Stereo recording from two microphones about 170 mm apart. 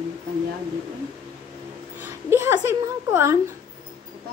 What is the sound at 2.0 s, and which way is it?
A child's voice, 15° right (ahead or behind).